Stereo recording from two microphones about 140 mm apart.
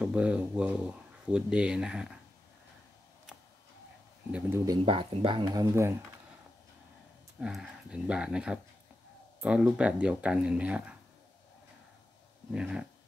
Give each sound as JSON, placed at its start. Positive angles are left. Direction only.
{"t": 0.0, "sound": "speech", "side_deg": -10}
{"t": 4.3, "sound": "speech", "side_deg": -10}
{"t": 4.8, "sound": "speech", "side_deg": -40}
{"t": 5.5, "sound": "speech", "side_deg": -20}
{"t": 7.3, "sound": "speech", "side_deg": -5}
{"t": 12.5, "sound": "speech", "side_deg": -5}